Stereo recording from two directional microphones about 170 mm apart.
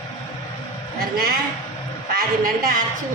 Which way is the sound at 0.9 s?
65° right (ahead or behind).